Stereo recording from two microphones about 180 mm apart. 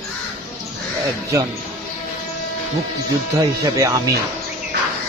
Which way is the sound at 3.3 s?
20° right (ahead or behind).